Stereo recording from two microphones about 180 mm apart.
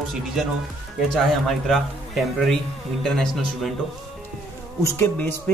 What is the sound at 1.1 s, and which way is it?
A man's voice, centre (ahead or behind).